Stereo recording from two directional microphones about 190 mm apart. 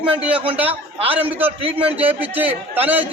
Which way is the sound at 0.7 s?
30° right (ahead or behind).